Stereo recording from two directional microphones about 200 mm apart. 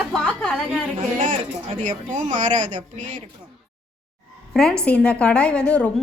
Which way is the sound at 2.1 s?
40° right (ahead or behind).